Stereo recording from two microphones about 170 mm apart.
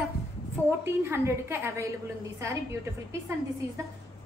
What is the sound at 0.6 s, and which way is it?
A woman's voice, 15° right (ahead or behind).